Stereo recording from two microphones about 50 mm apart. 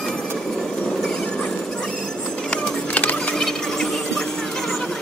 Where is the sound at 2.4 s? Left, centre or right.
Centre.